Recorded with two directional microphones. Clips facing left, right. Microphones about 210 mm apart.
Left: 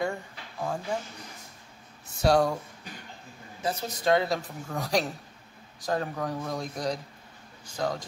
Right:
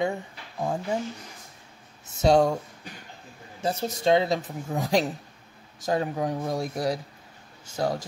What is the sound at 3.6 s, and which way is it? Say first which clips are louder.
Speech: right 4 dB; 30° right (ahead or behind).